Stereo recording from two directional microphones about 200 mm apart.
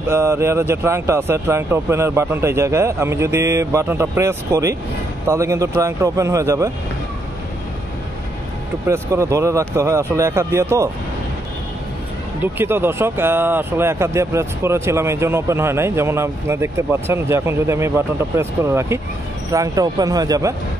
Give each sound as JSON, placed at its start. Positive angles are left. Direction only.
{"t": 0.1, "sound": "speech", "side_deg": -15}
{"t": 8.8, "sound": "speech", "side_deg": -15}
{"t": 12.5, "sound": "speech", "side_deg": -10}